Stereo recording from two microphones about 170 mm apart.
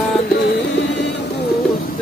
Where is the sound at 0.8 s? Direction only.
90° left.